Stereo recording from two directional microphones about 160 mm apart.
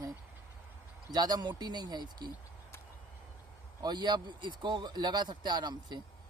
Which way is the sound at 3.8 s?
25° right (ahead or behind).